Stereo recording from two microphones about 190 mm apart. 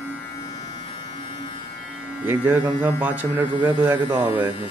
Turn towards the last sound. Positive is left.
turn(degrees=-10)  # may be behind; listen again after turning